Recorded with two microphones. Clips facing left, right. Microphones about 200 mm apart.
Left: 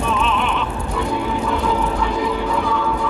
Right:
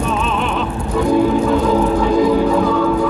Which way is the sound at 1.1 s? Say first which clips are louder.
Right 10 dB; 40° right (ahead or behind).